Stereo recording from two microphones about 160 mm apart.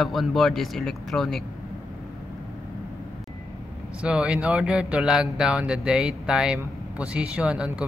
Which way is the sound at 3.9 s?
5° right (ahead or behind).